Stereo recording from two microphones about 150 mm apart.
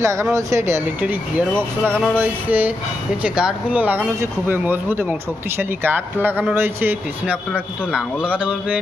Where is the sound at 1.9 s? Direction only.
5° left (ahead or behind).